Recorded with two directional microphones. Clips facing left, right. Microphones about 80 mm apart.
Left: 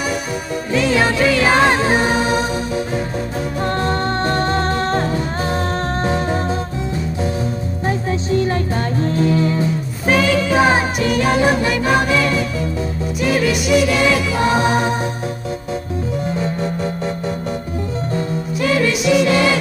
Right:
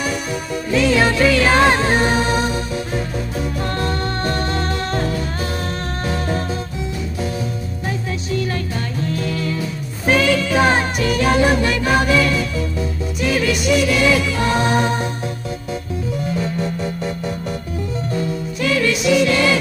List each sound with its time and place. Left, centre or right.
0.7 s music: centre
3.6 s music: left
7.8 s music: left
10.0 s music: centre
13.3 s music: centre
18.6 s music: left
18.9 s music: centre